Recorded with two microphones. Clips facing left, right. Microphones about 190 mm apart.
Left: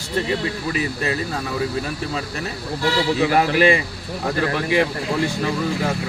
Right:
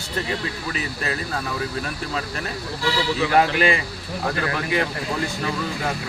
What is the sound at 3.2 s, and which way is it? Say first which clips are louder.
Speech: left 1 dB; 40° left (ahead or behind).